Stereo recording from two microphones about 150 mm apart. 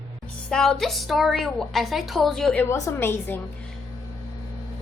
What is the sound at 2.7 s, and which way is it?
Speech, 20° left (ahead or behind).